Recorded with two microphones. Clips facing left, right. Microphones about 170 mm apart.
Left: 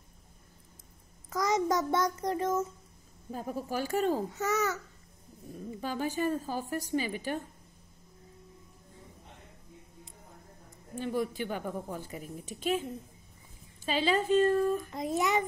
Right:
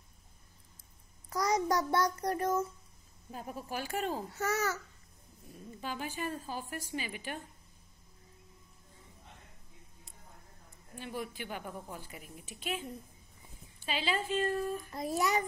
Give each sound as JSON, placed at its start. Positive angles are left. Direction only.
{"t": 1.5, "sound": "child singing", "side_deg": 20}
{"t": 3.3, "sound": "a woman's voice", "side_deg": 40}
{"t": 4.3, "sound": "child singing", "side_deg": 20}
{"t": 5.8, "sound": "a woman's voice", "side_deg": 40}
{"t": 11.0, "sound": "a woman's voice", "side_deg": 45}
{"t": 13.8, "sound": "a woman's voice", "side_deg": 45}
{"t": 14.9, "sound": "child singing", "side_deg": 20}